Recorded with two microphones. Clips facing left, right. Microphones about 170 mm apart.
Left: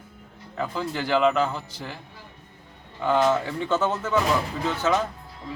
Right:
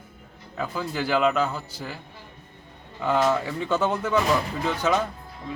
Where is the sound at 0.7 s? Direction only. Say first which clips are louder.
Even; 10° right (ahead or behind).